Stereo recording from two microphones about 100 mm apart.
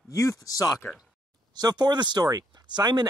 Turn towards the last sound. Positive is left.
turn(degrees=-45)  # may be behind; listen again after turning